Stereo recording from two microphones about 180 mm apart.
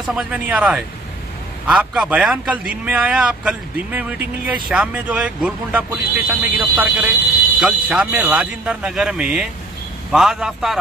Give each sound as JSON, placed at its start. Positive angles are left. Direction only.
{"t": 0.0, "sound": "speech", "side_deg": -5}